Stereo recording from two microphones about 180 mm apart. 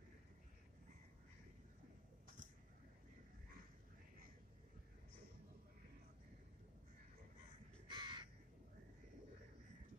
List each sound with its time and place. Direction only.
7.9 s crow: 25° right (ahead or behind)